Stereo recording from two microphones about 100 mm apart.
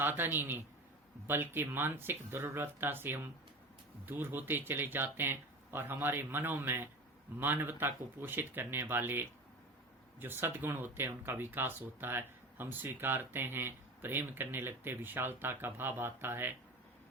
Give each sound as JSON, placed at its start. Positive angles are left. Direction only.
{"t": 0.0, "sound": "speech", "side_deg": -20}